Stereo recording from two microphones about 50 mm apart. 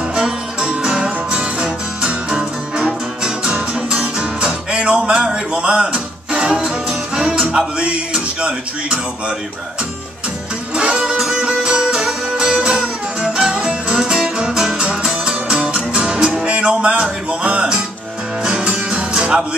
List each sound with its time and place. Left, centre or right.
0.1 s music: centre
4.6 s music: right
10.8 s music: centre